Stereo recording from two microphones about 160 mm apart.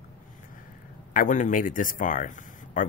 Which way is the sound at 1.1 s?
55° left (ahead or behind).